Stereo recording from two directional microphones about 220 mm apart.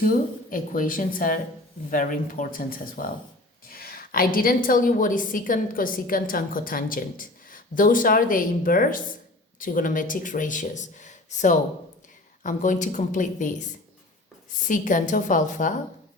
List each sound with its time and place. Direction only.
0.0 s a woman's voice: 40° left (ahead or behind)
14.7 s a woman's voice: 35° left (ahead or behind)